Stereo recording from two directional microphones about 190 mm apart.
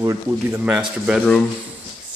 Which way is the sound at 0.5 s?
5° right (ahead or behind).